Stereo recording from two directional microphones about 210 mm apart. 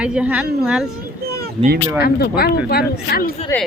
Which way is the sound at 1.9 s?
50° left (ahead or behind).